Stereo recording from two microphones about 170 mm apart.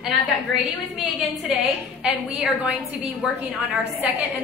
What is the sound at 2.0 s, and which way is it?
Speech, 5° right (ahead or behind).